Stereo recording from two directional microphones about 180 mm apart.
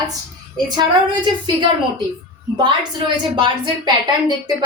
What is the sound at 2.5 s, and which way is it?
A woman's voice, 25° right (ahead or behind).